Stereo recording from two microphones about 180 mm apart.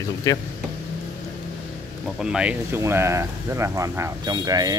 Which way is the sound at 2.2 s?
5° right (ahead or behind).